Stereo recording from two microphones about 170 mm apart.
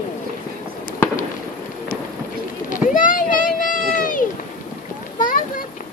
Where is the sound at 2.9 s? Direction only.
50° left (ahead or behind).